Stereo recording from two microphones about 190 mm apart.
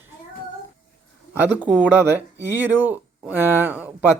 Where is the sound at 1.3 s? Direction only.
10° right (ahead or behind).